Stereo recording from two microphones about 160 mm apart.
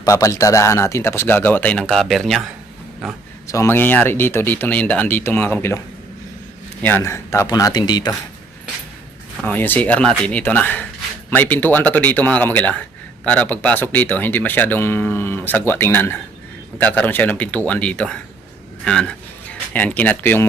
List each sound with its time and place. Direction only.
0.0 s speech: 20° left (ahead or behind); by 3.2 s centre (ahead or behind)
3.4 s speech: 20° left (ahead or behind)
6.8 s speech: 15° left (ahead or behind)
9.4 s speech: 10° left (ahead or behind)